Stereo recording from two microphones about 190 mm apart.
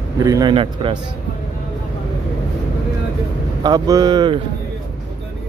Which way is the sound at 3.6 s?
20° right (ahead or behind).